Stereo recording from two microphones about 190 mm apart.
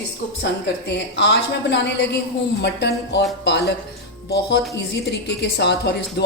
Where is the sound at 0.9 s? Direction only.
65° left (ahead or behind).